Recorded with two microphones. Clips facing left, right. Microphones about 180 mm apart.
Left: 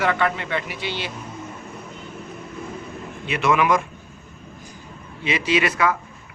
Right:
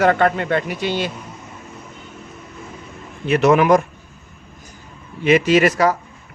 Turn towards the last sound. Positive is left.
turn(degrees=-40)  # may be behind; listen again after turning